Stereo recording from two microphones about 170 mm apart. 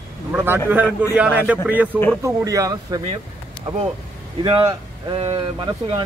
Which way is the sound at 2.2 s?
20° right (ahead or behind).